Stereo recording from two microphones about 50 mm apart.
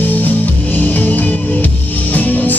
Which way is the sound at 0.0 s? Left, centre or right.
Left.